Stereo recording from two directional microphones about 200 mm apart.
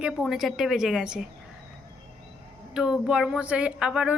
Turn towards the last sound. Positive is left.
turn(degrees=-5)  # may be behind; listen again after turning